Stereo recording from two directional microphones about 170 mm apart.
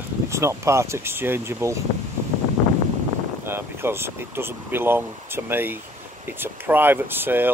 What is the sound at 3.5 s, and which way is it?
Speech, 15° right (ahead or behind).